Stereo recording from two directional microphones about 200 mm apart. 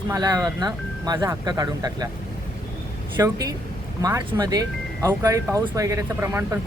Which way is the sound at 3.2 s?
20° right (ahead or behind).